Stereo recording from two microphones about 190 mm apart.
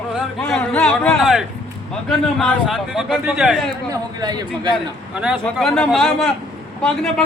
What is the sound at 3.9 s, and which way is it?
Speech, 20° right (ahead or behind).